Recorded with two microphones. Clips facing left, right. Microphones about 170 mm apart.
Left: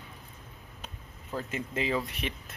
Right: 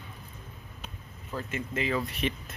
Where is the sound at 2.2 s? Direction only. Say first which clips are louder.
Right 5 dB; 10° left (ahead or behind).